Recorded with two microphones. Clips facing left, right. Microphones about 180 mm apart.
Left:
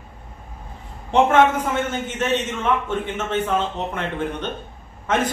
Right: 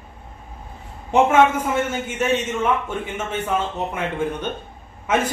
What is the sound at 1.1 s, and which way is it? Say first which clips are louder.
A man's voice: even; 10° right (ahead or behind).